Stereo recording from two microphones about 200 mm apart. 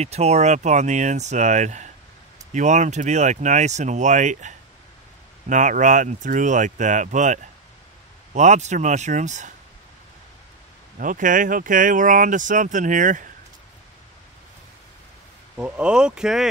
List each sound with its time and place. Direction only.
0.0 s speech: 30° right (ahead or behind)
11.0 s speech: 40° right (ahead or behind)
15.5 s speech: 5° right (ahead or behind)